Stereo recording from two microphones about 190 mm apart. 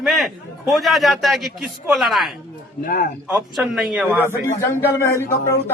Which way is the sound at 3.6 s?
Centre (ahead or behind).